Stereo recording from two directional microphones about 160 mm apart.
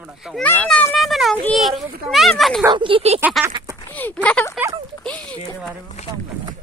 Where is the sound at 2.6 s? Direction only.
30° right (ahead or behind).